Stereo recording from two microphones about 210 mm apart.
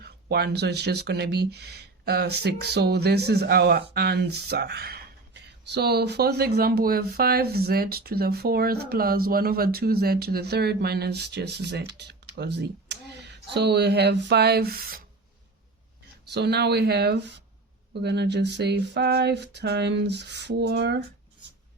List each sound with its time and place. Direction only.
0.0 s speech: 50° right (ahead or behind)
16.3 s speech: 50° right (ahead or behind)